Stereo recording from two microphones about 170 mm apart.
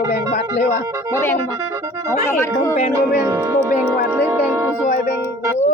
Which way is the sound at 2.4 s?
15° left (ahead or behind).